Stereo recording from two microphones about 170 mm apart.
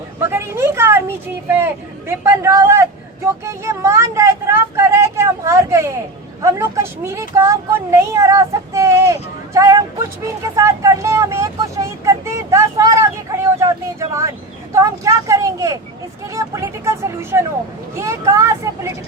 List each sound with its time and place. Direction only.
0.2 s speech: 15° right (ahead or behind)